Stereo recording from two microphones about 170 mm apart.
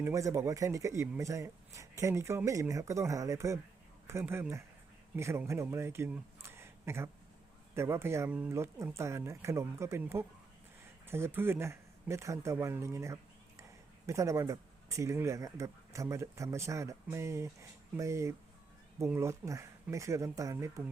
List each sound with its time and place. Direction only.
0.0 s speech: 20° right (ahead or behind)